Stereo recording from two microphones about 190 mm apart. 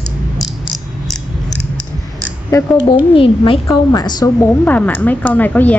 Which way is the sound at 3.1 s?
30° left (ahead or behind).